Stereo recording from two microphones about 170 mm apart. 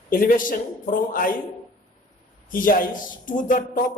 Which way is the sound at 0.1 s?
55° left (ahead or behind).